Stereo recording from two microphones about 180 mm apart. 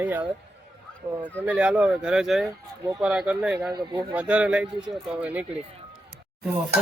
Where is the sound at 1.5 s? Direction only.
5° right (ahead or behind).